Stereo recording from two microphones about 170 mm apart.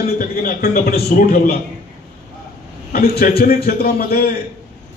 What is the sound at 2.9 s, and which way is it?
A man's voice, 65° left (ahead or behind).